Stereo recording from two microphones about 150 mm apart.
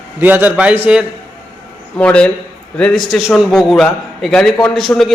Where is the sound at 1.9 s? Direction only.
5° left (ahead or behind).